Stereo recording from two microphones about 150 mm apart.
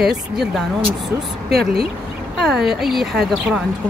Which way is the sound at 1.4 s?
90° right.